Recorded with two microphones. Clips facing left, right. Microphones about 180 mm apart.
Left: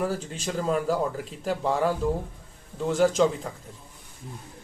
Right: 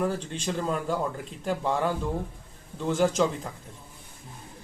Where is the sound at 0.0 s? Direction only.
5° left (ahead or behind).